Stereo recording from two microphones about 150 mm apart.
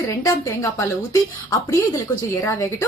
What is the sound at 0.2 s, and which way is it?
Speech, 20° left (ahead or behind).